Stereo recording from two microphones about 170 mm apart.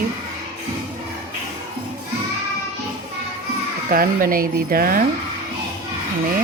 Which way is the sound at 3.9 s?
55° right (ahead or behind).